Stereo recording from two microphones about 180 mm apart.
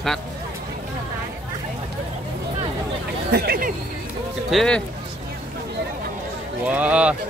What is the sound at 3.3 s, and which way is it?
Hubbub, 60° right (ahead or behind).